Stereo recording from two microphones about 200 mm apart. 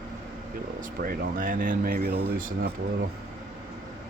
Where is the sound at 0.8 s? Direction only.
45° right (ahead or behind).